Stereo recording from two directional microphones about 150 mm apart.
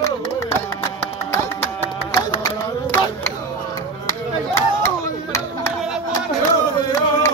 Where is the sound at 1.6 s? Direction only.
15° left (ahead or behind).